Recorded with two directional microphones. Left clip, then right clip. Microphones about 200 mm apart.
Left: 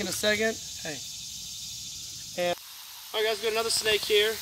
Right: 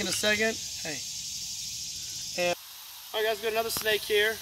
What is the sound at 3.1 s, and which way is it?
Speech, centre (ahead or behind).